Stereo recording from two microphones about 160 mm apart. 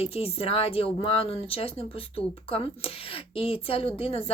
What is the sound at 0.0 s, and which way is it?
A woman's voice, 40° left (ahead or behind).